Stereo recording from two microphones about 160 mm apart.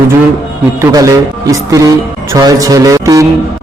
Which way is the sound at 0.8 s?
20° right (ahead or behind).